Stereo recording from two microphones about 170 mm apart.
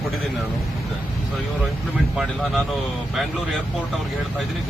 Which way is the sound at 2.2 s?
Centre (ahead or behind).